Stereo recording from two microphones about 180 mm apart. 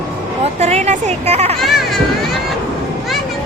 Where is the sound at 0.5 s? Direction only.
40° right (ahead or behind).